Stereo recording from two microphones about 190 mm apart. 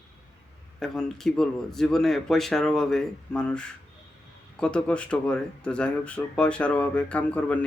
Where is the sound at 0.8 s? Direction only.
Centre (ahead or behind).